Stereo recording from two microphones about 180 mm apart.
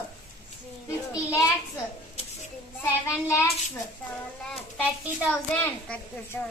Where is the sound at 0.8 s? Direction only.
15° left (ahead or behind).